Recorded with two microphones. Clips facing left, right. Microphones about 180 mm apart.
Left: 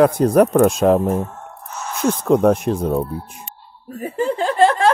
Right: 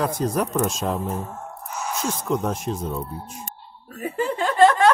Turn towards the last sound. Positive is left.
turn(degrees=30)  # may be behind; listen again after turning